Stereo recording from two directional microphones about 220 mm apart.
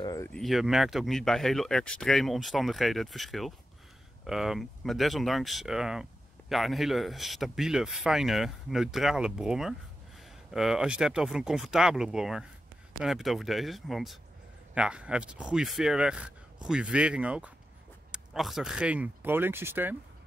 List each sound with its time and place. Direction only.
0.0 s speech: 15° left (ahead or behind)
0.3 s speech: centre (ahead or behind)